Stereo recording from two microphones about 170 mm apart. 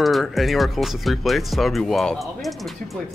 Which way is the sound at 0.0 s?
Centre (ahead or behind).